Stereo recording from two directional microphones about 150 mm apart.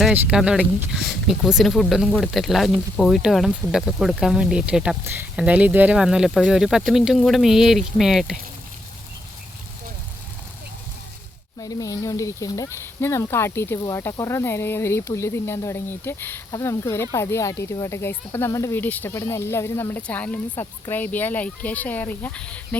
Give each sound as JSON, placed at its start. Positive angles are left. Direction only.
{"t": 0.1, "sound": "speech", "side_deg": -5}
{"t": 11.6, "sound": "speech", "side_deg": 25}